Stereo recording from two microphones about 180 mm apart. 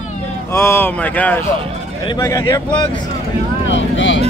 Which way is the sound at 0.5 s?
10° left (ahead or behind).